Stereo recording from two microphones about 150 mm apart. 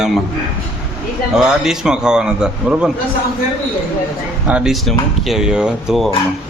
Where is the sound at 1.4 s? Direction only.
5° right (ahead or behind).